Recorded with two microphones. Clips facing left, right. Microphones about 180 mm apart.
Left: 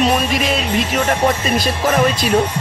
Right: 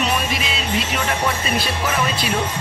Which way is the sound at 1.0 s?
45° left (ahead or behind).